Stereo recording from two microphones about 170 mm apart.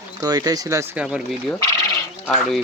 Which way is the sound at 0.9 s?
5° right (ahead or behind).